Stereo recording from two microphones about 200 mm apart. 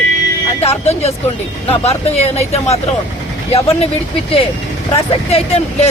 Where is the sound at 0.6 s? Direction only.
30° left (ahead or behind).